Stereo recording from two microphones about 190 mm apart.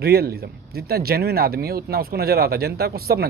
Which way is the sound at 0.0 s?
55° right (ahead or behind).